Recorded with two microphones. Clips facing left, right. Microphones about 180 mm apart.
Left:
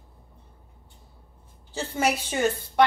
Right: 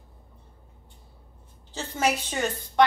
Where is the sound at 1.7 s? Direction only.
10° left (ahead or behind).